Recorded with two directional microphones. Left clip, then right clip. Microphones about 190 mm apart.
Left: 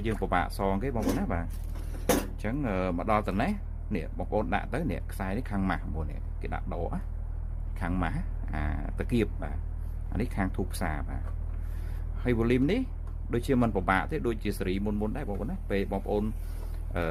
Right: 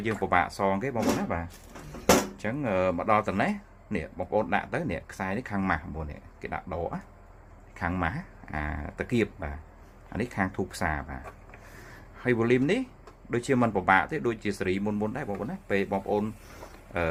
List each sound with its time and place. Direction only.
0.0 s speech: 35° left (ahead or behind)
12.2 s speech: 30° left (ahead or behind)